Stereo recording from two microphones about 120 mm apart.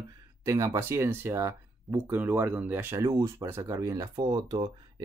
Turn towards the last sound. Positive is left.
turn(degrees=-35)  # may be behind; listen again after turning